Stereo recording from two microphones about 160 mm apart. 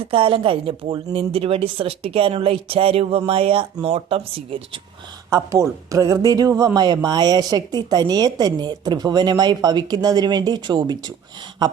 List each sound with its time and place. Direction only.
0.0 s a woman's voice: 35° right (ahead or behind)
5.3 s a woman's voice: 20° right (ahead or behind)